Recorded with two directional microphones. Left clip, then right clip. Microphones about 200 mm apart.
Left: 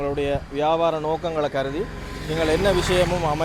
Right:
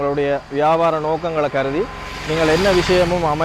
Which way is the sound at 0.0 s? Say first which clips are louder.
Right 5 dB; 15° right (ahead or behind).